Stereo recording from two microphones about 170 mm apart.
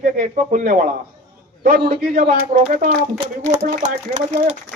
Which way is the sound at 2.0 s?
60° right (ahead or behind).